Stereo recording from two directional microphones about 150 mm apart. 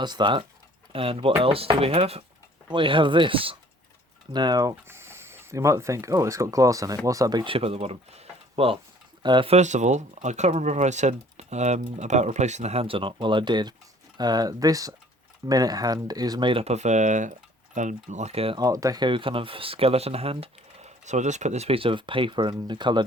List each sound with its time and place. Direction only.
0.0 s speech: 30° right (ahead or behind)
4.7 s speech: 15° right (ahead or behind); by 9.6 s 35° right (ahead or behind)
9.6 s speech: 50° right (ahead or behind)
18.6 s speech: 25° right (ahead or behind)